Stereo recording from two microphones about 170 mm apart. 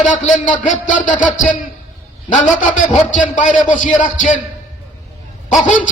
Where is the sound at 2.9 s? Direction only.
50° left (ahead or behind).